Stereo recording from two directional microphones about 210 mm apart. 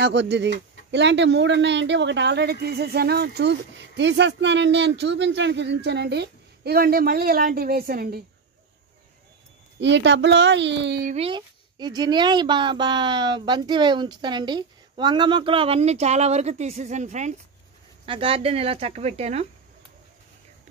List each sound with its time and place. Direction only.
0.0 s a woman's voice: 55° right (ahead or behind)
9.8 s speech: 60° right (ahead or behind)
11.1 s speech: 25° right (ahead or behind)
20.7 s a sound: 35° right (ahead or behind)